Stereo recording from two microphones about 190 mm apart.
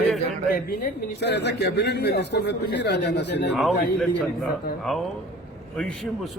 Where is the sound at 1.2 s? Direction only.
65° left (ahead or behind).